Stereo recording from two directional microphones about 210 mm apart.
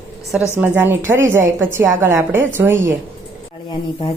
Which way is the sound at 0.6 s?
10° right (ahead or behind).